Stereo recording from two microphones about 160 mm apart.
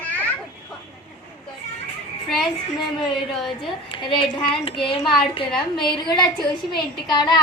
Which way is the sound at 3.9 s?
35° left (ahead or behind).